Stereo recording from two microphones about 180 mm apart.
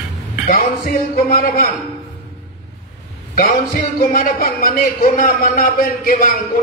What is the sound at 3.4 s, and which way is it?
A man's voice, 50° left (ahead or behind).